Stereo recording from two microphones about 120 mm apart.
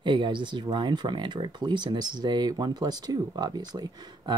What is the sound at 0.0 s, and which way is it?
Speech, 40° right (ahead or behind).